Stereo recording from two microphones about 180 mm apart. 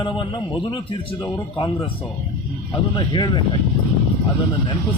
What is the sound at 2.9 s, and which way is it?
Speech, 25° left (ahead or behind).